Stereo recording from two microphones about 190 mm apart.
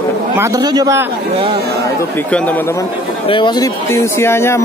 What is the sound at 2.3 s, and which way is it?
Speech, 5° left (ahead or behind).